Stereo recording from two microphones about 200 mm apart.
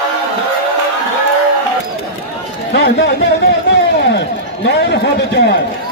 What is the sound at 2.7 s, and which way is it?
Run, 60° left (ahead or behind).